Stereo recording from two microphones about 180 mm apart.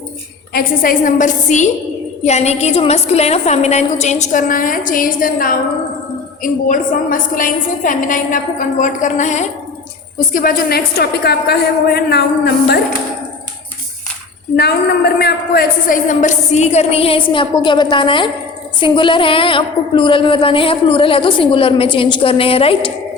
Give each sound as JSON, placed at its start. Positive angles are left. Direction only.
{"t": 0.5, "sound": "a woman's voice", "side_deg": 50}
{"t": 10.2, "sound": "a woman's voice", "side_deg": 50}
{"t": 14.5, "sound": "a woman's voice", "side_deg": 65}
{"t": 15.2, "sound": "a woman's voice", "side_deg": 55}